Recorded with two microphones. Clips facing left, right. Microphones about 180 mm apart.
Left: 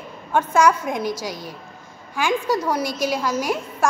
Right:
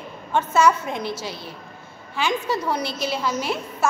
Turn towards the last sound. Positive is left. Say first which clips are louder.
# left 2 dB
turn(degrees=10)  # may be behind; listen again after turning